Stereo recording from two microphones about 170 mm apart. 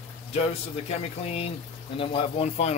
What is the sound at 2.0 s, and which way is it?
Speech, 35° left (ahead or behind).